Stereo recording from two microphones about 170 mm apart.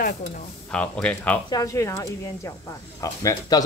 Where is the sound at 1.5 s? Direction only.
20° left (ahead or behind).